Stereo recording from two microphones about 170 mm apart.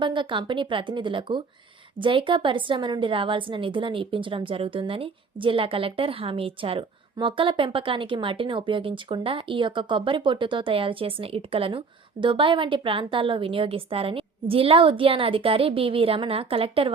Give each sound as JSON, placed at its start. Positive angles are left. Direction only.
{"t": 0.0, "sound": "a woman's voice", "side_deg": -30}